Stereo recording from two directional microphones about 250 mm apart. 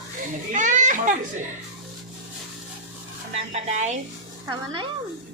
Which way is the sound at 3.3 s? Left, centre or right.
Right.